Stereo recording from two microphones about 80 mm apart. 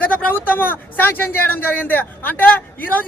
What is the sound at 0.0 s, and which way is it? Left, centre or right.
Speech, left.